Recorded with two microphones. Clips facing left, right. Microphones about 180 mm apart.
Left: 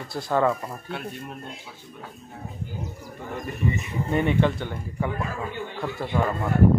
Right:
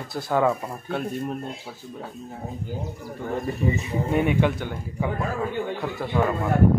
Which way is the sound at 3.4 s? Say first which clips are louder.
Even; 35° right (ahead or behind).